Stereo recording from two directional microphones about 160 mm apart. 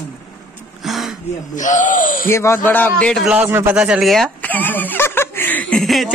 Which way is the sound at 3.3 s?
10° right (ahead or behind).